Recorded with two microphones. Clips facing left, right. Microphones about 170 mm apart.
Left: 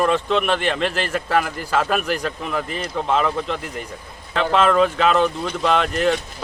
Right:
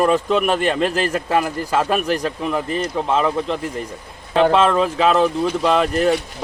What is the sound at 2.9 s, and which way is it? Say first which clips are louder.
Speech: even; 5° right (ahead or behind).